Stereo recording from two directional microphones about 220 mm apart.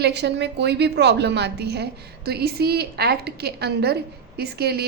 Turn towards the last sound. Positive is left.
turn(degrees=-45)  # may be behind; listen again after turning